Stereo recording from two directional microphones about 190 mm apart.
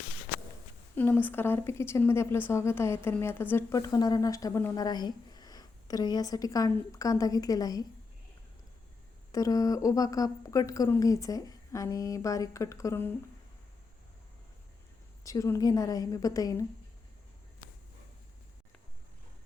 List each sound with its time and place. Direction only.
0.9 s a woman's voice: 10° left (ahead or behind)
9.3 s a woman's voice: 20° left (ahead or behind)
15.2 s a woman's voice: 15° left (ahead or behind)